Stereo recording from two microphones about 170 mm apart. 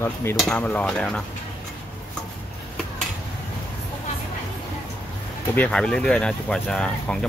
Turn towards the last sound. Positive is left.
turn(degrees=5)  # may be behind; listen again after turning